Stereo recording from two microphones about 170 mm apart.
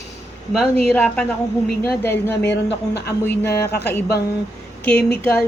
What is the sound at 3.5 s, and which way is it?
Speech, 75° left (ahead or behind).